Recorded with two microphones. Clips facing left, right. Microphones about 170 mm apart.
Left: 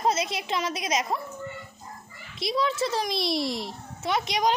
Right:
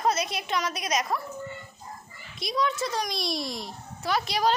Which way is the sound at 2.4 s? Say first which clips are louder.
Left 2 dB; 25° left (ahead or behind).